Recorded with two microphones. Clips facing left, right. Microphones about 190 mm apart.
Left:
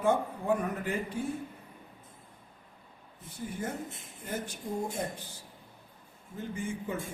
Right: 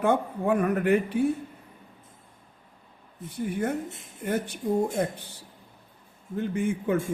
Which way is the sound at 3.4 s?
65° right (ahead or behind).